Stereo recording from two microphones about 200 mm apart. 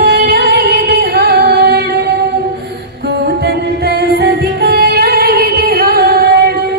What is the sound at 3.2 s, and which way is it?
Music, 55° right (ahead or behind).